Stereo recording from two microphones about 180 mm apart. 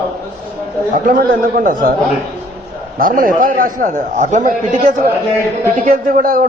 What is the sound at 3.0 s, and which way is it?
A man's voice, 50° right (ahead or behind).